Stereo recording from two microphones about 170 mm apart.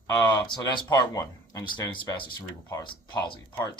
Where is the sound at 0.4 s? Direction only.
30° left (ahead or behind).